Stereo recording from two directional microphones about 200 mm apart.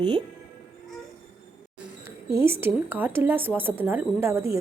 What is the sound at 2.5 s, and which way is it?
A woman's voice, 10° right (ahead or behind).